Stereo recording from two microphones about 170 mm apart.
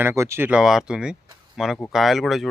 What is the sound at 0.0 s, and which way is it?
Speech, 15° right (ahead or behind).